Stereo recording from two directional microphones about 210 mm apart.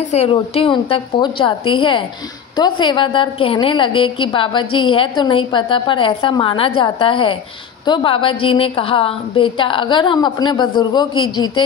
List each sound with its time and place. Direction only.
0.1 s a woman's voice: 30° left (ahead or behind)